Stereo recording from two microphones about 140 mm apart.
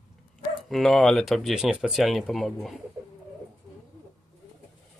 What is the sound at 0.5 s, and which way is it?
Speech, centre (ahead or behind).